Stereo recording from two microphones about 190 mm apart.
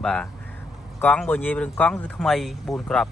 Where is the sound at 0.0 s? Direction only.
5° left (ahead or behind).